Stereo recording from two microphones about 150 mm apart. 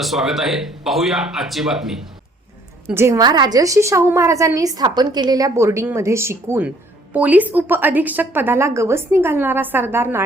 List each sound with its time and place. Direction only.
0.0 s speech: centre (ahead or behind)
2.9 s a woman's voice: 20° right (ahead or behind)